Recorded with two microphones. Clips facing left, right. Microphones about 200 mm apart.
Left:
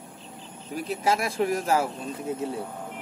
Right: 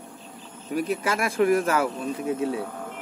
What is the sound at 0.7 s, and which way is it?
Speech, 55° right (ahead or behind).